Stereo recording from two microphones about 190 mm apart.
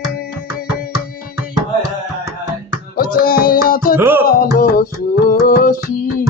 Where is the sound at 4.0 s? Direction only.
10° right (ahead or behind).